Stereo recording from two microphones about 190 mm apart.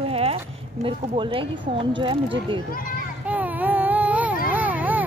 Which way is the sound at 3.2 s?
10° right (ahead or behind).